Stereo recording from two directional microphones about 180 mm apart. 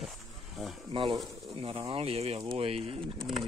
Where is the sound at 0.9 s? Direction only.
30° right (ahead or behind).